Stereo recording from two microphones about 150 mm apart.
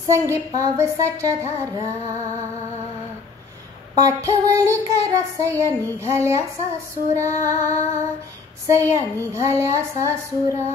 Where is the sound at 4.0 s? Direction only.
20° right (ahead or behind).